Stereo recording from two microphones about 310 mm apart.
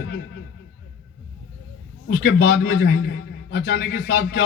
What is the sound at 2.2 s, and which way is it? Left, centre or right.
Speech, left.